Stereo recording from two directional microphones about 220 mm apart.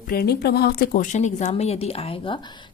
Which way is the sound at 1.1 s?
30° left (ahead or behind).